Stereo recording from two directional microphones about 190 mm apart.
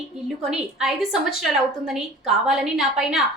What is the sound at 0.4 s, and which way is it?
A woman's voice, centre (ahead or behind).